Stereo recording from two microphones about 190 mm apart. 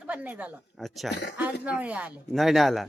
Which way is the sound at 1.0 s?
65° left (ahead or behind).